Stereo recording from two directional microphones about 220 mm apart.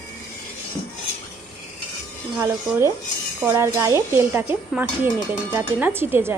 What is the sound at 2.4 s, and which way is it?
Speech, 10° right (ahead or behind).